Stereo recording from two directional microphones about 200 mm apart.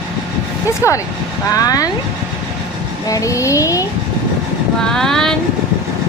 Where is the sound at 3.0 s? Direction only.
15° left (ahead or behind).